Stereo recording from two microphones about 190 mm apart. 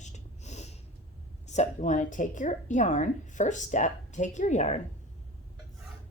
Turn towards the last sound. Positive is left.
turn(degrees=40)  # may be behind; listen again after turning